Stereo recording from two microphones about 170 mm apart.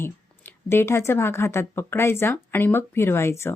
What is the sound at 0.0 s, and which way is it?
A woman's voice, 15° left (ahead or behind).